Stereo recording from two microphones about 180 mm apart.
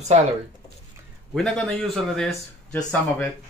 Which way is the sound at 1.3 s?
5° left (ahead or behind).